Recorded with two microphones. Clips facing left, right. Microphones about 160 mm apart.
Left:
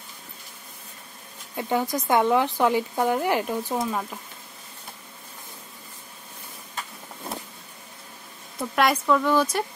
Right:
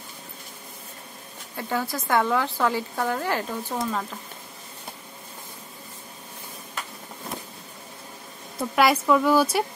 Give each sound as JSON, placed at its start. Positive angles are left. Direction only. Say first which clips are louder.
{"t": 1.6, "sound": "speech", "louder": "left 3 dB", "side_deg": 20}
{"t": 8.5, "sound": "a woman's voice", "louder": "right 2 dB", "side_deg": 0}